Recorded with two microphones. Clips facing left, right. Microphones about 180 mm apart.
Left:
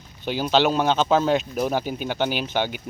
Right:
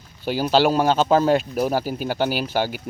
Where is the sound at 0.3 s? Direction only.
5° right (ahead or behind).